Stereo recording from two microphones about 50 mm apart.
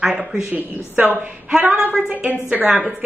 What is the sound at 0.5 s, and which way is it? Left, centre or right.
Speech, right.